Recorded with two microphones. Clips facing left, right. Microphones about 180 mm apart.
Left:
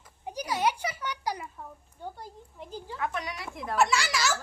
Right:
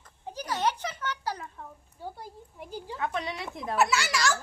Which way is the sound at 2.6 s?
10° right (ahead or behind).